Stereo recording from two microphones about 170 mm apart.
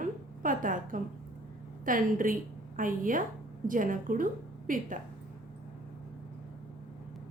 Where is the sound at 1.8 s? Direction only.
55° right (ahead or behind).